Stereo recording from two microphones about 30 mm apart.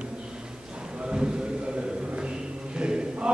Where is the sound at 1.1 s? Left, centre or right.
Right.